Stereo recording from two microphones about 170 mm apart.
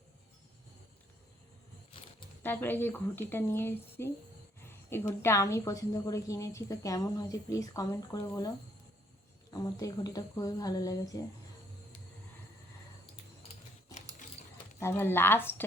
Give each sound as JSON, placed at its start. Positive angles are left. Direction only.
{"t": 1.9, "sound": "a sound", "side_deg": 35}
{"t": 2.4, "sound": "a woman's voice", "side_deg": 10}
{"t": 14.8, "sound": "speech", "side_deg": 15}